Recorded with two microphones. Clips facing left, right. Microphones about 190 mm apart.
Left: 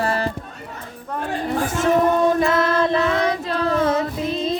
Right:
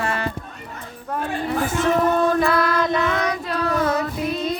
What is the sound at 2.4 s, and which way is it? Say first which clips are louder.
Child singing: left 1 dB; 25° left (ahead or behind).